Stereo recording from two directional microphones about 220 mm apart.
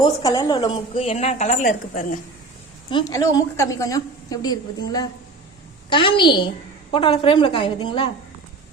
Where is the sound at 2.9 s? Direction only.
15° left (ahead or behind).